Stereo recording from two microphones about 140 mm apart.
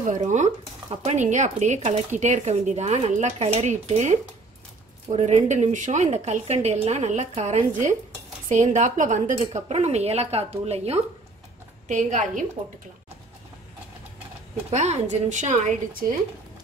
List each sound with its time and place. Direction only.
0.0 s a woman's voice: 60° right (ahead or behind)
8.5 s a woman's voice: 65° right (ahead or behind); by 11.0 s 50° right (ahead or behind)
11.9 s speech: 65° right (ahead or behind)
14.7 s speech: 55° right (ahead or behind); by 16.2 s 80° right